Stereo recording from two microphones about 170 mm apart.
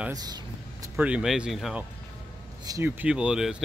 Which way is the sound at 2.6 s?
20° right (ahead or behind).